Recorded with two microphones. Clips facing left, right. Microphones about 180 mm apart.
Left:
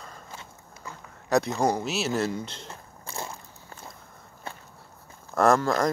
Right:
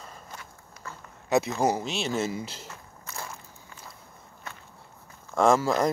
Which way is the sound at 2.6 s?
30° left (ahead or behind).